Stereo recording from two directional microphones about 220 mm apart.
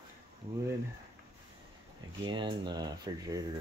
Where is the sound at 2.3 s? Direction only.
20° right (ahead or behind).